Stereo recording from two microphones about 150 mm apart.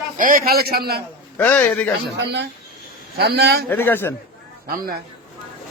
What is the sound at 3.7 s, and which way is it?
Speech, 15° left (ahead or behind).